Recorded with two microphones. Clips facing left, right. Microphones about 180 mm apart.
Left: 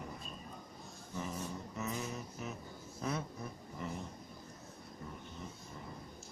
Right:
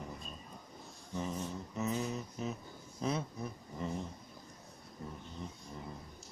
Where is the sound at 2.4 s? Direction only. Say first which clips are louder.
Right 4 dB; 25° right (ahead or behind).